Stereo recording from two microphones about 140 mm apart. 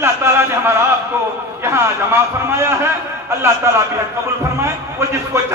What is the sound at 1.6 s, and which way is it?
A man's voice, 15° right (ahead or behind).